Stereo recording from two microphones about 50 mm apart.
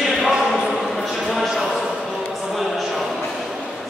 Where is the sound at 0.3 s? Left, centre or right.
Centre.